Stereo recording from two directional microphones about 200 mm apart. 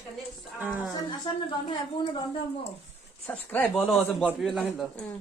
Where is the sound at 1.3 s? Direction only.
25° left (ahead or behind).